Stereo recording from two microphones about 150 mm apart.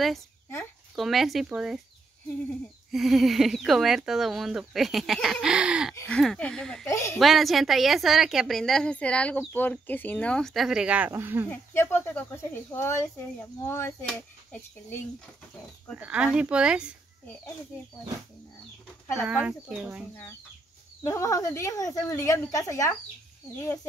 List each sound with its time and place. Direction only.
0.9 s speech: centre (ahead or behind)
2.9 s speech: centre (ahead or behind)
6.0 s speech: 5° left (ahead or behind)
6.9 s speech: 20° left (ahead or behind)
7.2 s speech: centre (ahead or behind)
11.5 s speech: 15° left (ahead or behind)
16.0 s speech: 10° right (ahead or behind)
19.2 s speech: 10° right (ahead or behind)
21.0 s speech: 20° left (ahead or behind)